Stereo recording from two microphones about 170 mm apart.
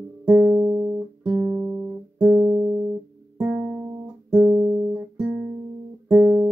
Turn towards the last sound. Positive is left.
turn(degrees=-10)  # may be behind; listen again after turning